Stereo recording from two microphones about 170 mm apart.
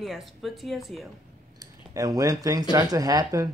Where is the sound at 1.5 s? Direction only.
20° right (ahead or behind).